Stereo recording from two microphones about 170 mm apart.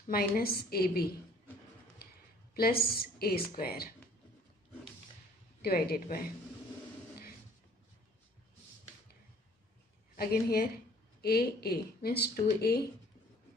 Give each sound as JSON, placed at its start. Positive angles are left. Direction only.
{"t": 0.1, "sound": "speech", "side_deg": 65}
{"t": 2.5, "sound": "speech", "side_deg": 65}
{"t": 5.6, "sound": "speech", "side_deg": 65}
{"t": 10.1, "sound": "speech", "side_deg": 65}